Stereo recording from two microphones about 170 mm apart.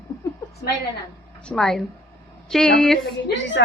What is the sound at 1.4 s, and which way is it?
A woman's voice, centre (ahead or behind).